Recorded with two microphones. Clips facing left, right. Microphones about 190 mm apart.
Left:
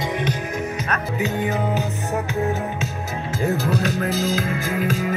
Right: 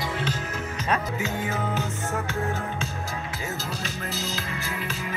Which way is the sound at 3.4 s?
60° left (ahead or behind).